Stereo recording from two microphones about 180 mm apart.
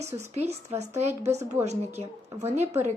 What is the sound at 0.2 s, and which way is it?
Speech, 35° right (ahead or behind).